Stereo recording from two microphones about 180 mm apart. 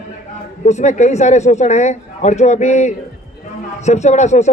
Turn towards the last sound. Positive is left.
turn(degrees=40)  # may be behind; listen again after turning